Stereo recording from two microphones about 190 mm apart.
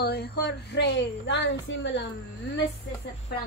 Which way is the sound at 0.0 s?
60° left (ahead or behind).